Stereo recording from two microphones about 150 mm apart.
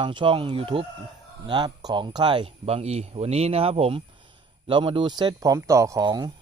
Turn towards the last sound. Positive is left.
turn(degrees=-25)  # may be behind; listen again after turning